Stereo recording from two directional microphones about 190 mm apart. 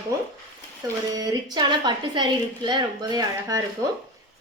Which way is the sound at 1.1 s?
20° right (ahead or behind).